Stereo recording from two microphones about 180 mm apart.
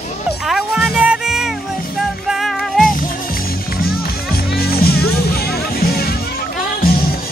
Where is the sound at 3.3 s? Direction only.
55° left (ahead or behind).